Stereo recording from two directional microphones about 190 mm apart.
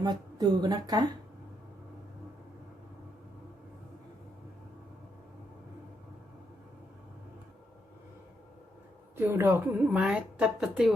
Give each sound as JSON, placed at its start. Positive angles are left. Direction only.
{"t": 0.0, "sound": "a woman's voice", "side_deg": -20}
{"t": 9.1, "sound": "a woman's voice", "side_deg": -10}